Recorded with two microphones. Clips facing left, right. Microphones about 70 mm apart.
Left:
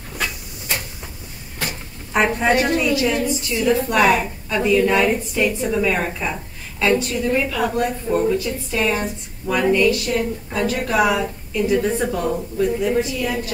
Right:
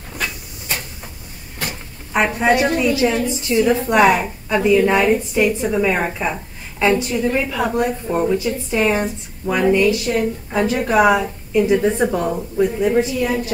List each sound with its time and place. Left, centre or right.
2.1 s a woman's voice: centre
2.8 s a woman's voice: right